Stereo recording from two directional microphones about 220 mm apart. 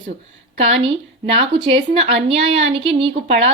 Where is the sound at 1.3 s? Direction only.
25° right (ahead or behind).